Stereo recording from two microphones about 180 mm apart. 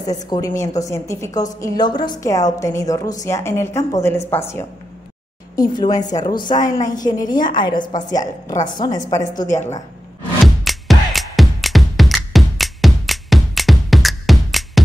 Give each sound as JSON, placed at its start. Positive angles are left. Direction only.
{"t": 0.0, "sound": "a woman's voice", "side_deg": 20}
{"t": 7.2, "sound": "a woman's voice", "side_deg": 50}
{"t": 7.5, "sound": "a woman's voice", "side_deg": 25}
{"t": 9.0, "sound": "a woman's voice", "side_deg": 45}
{"t": 9.6, "sound": "a woman's voice", "side_deg": 15}
{"t": 10.4, "sound": "music", "side_deg": 0}